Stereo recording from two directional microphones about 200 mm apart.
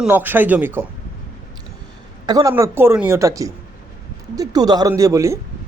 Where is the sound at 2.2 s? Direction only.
20° right (ahead or behind).